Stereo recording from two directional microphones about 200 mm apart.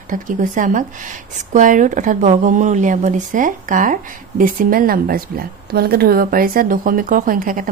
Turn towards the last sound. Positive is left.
turn(degrees=-45)  # may be behind; listen again after turning